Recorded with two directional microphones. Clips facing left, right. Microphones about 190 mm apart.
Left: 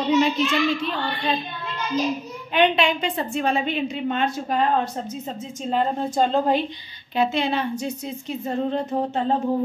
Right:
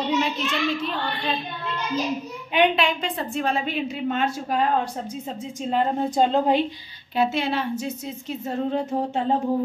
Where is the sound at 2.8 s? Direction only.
Centre (ahead or behind).